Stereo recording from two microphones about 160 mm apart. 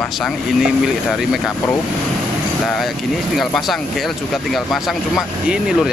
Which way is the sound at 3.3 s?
Centre (ahead or behind).